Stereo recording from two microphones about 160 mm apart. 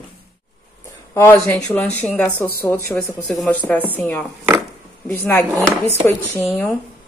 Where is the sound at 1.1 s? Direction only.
15° left (ahead or behind).